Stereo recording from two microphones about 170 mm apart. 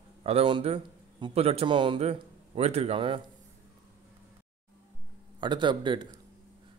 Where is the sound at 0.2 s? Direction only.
35° right (ahead or behind).